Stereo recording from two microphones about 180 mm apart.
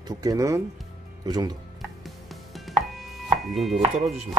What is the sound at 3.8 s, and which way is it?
Speech, 35° right (ahead or behind).